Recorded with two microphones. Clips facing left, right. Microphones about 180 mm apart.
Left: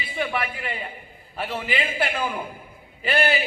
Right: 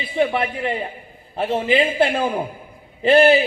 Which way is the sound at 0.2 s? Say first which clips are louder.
Right 8 dB; 30° right (ahead or behind).